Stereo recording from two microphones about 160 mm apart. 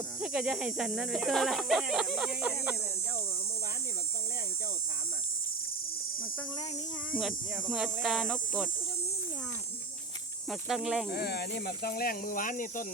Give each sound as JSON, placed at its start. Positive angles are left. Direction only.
{"t": 0.2, "sound": "speech", "side_deg": -5}
{"t": 7.1, "sound": "speech", "side_deg": 0}
{"t": 10.5, "sound": "speech", "side_deg": 0}
{"t": 11.1, "sound": "speech", "side_deg": 85}